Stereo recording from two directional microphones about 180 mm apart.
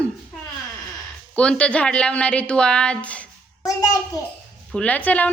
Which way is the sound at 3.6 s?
20° left (ahead or behind).